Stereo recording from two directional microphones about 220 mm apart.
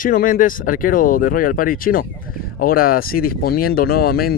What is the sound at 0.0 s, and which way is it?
Speech, 40° left (ahead or behind).